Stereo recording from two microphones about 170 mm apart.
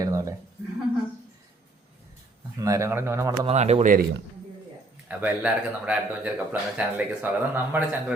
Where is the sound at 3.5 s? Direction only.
40° right (ahead or behind).